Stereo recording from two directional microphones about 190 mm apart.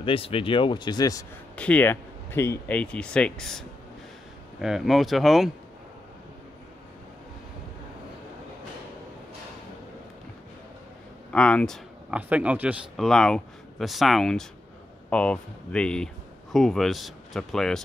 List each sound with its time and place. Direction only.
0.0 s speech: 30° left (ahead or behind)
1.6 s speech: 10° left (ahead or behind)
11.3 s speech: 5° left (ahead or behind)